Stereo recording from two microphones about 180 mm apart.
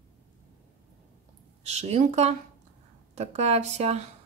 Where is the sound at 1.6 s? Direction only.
35° right (ahead or behind).